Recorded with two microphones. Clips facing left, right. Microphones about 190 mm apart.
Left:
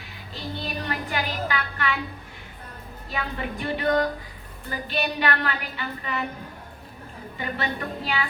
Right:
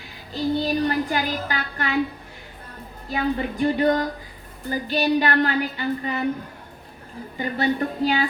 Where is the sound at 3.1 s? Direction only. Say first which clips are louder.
Right 7 dB; 40° right (ahead or behind).